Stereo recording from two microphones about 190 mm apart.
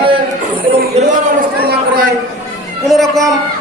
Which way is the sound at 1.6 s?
55° right (ahead or behind).